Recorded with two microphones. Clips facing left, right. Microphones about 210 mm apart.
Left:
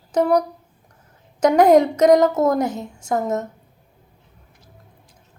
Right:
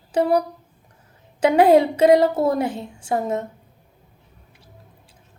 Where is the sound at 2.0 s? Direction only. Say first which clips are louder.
Left 1 dB; 30° right (ahead or behind).